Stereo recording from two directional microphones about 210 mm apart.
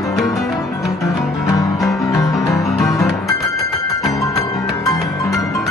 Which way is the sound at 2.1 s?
15° left (ahead or behind).